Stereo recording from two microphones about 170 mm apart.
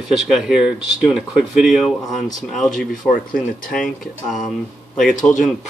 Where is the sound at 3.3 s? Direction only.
55° left (ahead or behind).